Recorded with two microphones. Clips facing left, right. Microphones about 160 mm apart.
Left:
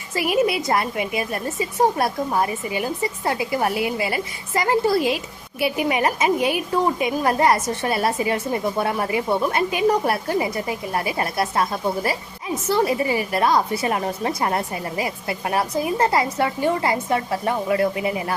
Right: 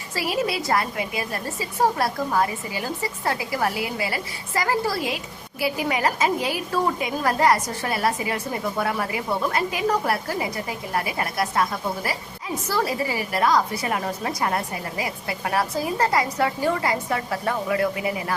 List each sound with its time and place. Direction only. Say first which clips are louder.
0.1 s a woman's voice: left 5 dB; 20° left (ahead or behind)